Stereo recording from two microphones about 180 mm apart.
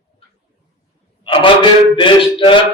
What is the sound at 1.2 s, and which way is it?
Speech, 25° left (ahead or behind).